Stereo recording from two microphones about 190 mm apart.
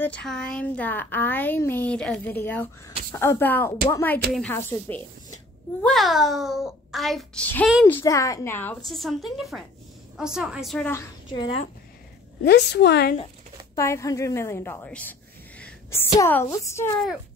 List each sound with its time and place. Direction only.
0.0 s a child's voice: 5° left (ahead or behind)
7.8 s a woman's voice: 15° left (ahead or behind)
11.2 s a woman's voice: 25° left (ahead or behind)
12.4 s a woman's voice: 60° left (ahead or behind)
13.7 s a woman's voice: 15° left (ahead or behind)